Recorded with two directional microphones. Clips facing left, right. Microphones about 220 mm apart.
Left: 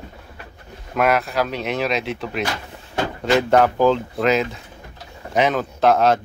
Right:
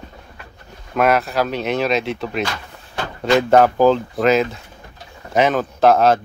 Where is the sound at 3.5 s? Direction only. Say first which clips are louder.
Right 3 dB; 40° right (ahead or behind).